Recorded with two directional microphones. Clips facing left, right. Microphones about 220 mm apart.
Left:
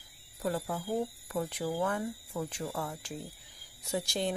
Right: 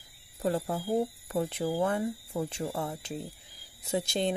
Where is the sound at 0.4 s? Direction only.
30° right (ahead or behind).